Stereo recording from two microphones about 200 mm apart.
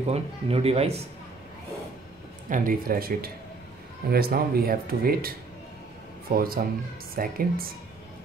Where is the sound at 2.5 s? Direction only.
45° right (ahead or behind).